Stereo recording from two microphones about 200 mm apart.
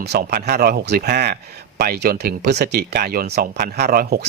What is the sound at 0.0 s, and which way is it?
A man's voice, 55° right (ahead or behind).